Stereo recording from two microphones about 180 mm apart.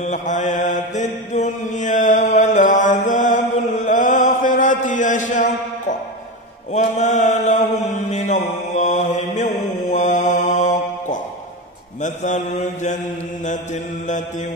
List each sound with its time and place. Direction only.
0.0 s mantra: 45° left (ahead or behind)